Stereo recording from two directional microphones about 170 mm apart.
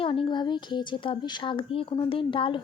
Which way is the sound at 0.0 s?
30° left (ahead or behind).